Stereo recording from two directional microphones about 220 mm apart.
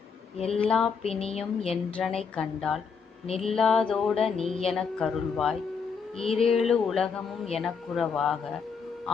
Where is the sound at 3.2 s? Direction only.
25° left (ahead or behind).